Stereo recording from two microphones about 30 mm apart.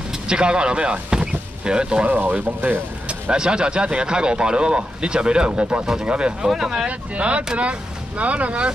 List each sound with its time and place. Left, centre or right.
0.3 s speech: right
2.0 s speech: right
3.3 s speech: right
6.4 s speech: centre
6.9 s speech: right